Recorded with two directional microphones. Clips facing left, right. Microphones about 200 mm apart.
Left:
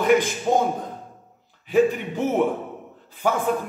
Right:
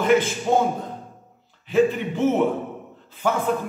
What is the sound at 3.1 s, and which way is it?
Speech, 10° left (ahead or behind).